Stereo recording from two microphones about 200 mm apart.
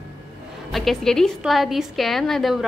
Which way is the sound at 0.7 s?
Centre (ahead or behind).